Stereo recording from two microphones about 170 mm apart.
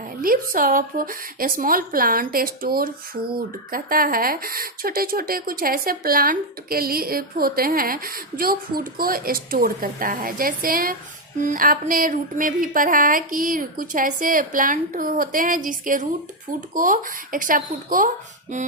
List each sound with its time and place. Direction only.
0.2 s speech: 55° right (ahead or behind)